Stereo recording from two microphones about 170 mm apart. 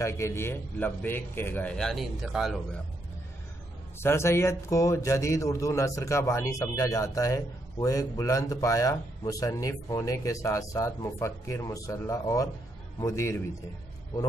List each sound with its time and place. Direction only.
0.0 s speech: 15° left (ahead or behind); by 2.8 s centre (ahead or behind)
4.0 s speech: 15° left (ahead or behind)